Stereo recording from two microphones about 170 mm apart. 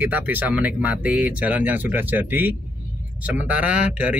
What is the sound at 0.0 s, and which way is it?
Speech, 10° right (ahead or behind).